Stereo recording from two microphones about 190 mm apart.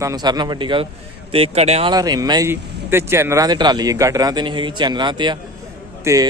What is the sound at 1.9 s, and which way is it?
Speech, 20° right (ahead or behind).